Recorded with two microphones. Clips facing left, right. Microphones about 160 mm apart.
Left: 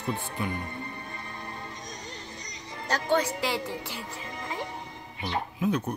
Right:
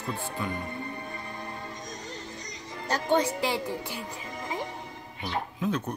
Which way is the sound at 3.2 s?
20° right (ahead or behind).